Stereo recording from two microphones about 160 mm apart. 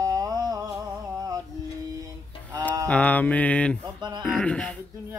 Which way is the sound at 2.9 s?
10° left (ahead or behind).